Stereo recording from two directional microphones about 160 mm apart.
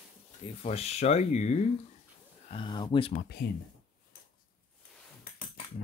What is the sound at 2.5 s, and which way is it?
Speech, 30° left (ahead or behind).